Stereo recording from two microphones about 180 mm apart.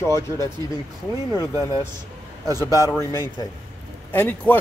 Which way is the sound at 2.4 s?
20° right (ahead or behind).